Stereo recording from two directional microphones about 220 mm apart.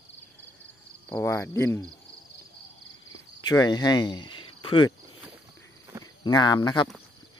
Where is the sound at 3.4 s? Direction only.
20° left (ahead or behind).